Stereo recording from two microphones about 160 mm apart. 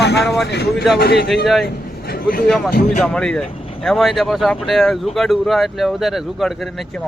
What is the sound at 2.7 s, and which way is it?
Speech, 55° left (ahead or behind).